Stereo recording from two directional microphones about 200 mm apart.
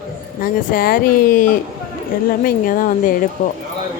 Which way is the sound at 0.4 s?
45° left (ahead or behind).